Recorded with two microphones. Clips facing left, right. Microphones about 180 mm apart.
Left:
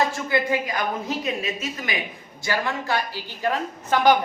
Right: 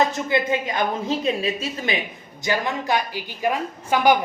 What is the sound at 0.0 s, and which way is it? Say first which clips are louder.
A woman's voice: right 2 dB; 20° right (ahead or behind).